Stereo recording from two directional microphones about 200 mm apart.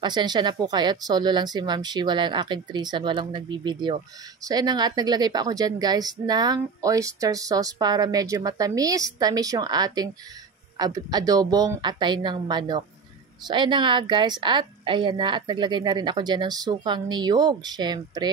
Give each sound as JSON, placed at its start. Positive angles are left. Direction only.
{"t": 0.0, "sound": "speech", "side_deg": -20}